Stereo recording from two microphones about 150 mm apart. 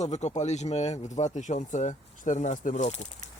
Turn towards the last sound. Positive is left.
turn(degrees=50)  # may be behind; listen again after turning